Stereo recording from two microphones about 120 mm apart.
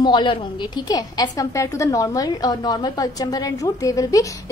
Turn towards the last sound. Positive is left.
turn(degrees=30)  # may be behind; listen again after turning